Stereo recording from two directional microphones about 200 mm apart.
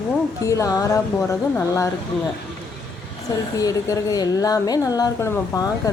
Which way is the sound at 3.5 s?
15° left (ahead or behind).